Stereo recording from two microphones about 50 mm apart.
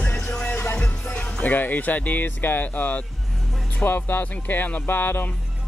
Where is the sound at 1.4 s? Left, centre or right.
Left.